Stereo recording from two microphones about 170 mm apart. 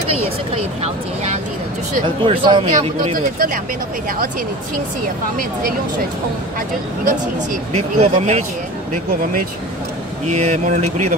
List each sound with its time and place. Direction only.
2.0 s speech: 30° right (ahead or behind)
3.2 s speech: 60° right (ahead or behind)
7.7 s speech: 40° right (ahead or behind)
10.2 s speech: 45° right (ahead or behind)